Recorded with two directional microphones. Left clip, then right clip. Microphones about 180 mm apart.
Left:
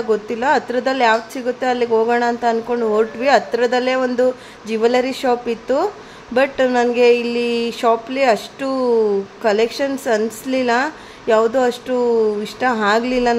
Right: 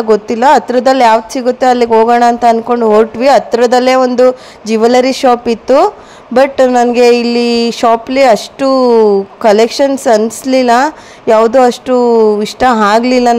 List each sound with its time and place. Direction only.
0.1 s a woman's voice: 35° right (ahead or behind)